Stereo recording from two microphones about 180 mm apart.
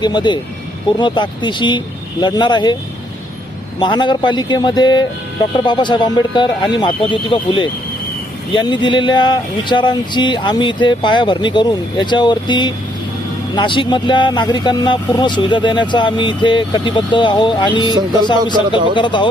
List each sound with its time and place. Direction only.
0.0 s speech: 25° left (ahead or behind)
3.8 s speech: 25° left (ahead or behind)